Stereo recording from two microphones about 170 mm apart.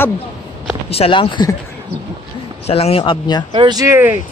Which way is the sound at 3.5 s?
25° right (ahead or behind).